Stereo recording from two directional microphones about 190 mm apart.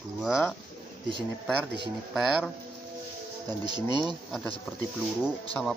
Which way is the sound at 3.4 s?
20° right (ahead or behind).